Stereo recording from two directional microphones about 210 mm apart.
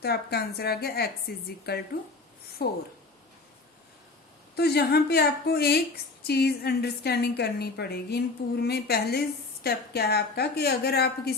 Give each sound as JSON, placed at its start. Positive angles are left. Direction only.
{"t": 0.0, "sound": "a woman's voice", "side_deg": 50}
{"t": 4.5, "sound": "a woman's voice", "side_deg": 50}